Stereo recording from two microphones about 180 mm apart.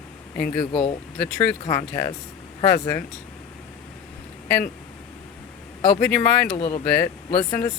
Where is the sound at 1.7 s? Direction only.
15° left (ahead or behind).